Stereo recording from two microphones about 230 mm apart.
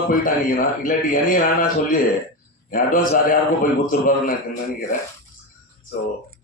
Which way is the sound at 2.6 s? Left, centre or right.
Left.